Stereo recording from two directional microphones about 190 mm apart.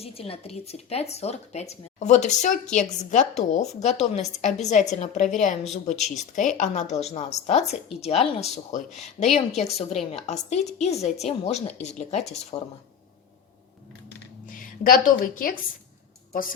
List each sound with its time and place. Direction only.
0.0 s speech: 30° left (ahead or behind)
14.4 s a woman's voice: 45° left (ahead or behind)